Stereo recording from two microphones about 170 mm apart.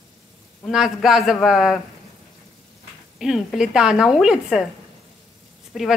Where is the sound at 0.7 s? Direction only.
Centre (ahead or behind).